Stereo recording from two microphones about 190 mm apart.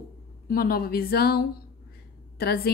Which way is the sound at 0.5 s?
50° left (ahead or behind).